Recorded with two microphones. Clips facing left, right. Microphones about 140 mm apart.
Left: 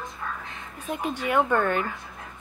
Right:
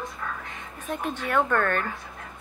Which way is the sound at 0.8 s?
10° left (ahead or behind).